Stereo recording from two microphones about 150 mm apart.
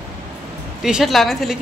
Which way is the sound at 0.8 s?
Centre (ahead or behind).